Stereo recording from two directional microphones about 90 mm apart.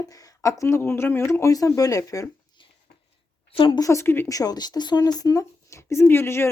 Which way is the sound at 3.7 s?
35° left (ahead or behind).